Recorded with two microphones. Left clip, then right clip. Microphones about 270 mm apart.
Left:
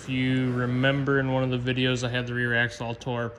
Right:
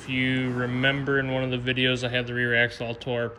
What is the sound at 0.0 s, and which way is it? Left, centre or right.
Speech, centre.